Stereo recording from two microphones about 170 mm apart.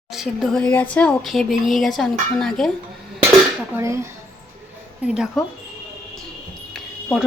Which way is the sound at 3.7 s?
15° right (ahead or behind).